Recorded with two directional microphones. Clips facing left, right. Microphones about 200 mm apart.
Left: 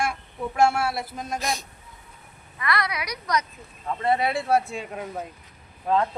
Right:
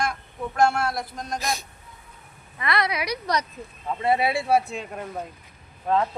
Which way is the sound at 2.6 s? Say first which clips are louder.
Right 2 dB; 25° right (ahead or behind).